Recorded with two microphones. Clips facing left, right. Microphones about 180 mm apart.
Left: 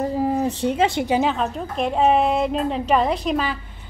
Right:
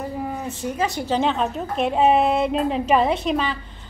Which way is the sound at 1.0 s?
5° left (ahead or behind).